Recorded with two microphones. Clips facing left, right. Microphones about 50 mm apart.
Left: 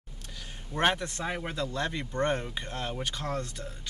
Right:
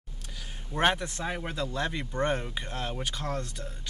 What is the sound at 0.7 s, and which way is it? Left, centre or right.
Speech, centre.